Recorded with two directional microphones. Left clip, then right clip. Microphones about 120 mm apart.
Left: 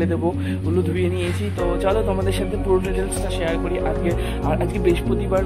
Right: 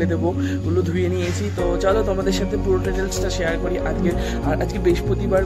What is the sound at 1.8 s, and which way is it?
Speech, 35° right (ahead or behind).